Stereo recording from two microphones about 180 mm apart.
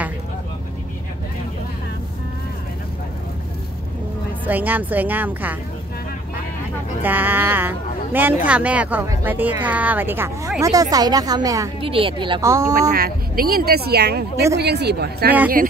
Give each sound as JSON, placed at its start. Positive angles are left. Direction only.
{"t": 4.5, "sound": "speech", "side_deg": -10}
{"t": 7.0, "sound": "a woman's voice", "side_deg": -10}
{"t": 11.8, "sound": "speech", "side_deg": -30}
{"t": 12.9, "sound": "speech", "side_deg": -55}